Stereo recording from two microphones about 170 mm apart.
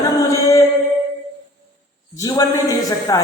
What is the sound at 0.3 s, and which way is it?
Mantra, 20° left (ahead or behind).